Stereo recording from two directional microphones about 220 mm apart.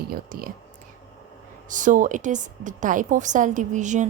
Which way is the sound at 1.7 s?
35° right (ahead or behind).